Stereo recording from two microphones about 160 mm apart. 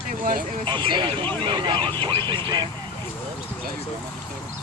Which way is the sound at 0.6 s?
30° right (ahead or behind).